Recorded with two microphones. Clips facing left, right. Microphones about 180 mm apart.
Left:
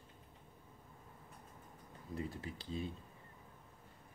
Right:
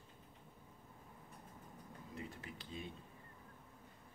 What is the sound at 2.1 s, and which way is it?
Speech, 30° left (ahead or behind).